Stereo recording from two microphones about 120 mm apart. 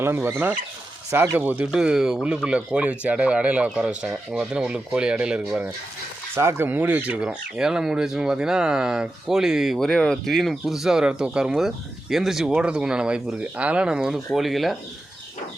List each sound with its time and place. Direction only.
0.0 s speech: 20° right (ahead or behind)
6.3 s speech: 20° right (ahead or behind); by 14.8 s centre (ahead or behind)